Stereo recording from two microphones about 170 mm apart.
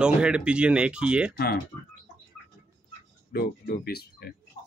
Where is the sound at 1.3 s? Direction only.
65° left (ahead or behind).